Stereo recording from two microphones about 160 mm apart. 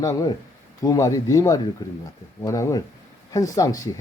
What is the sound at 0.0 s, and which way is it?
Speech, 20° left (ahead or behind).